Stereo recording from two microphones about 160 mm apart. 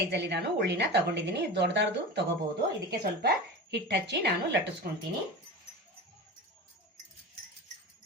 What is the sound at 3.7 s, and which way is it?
A woman's voice, 90° right.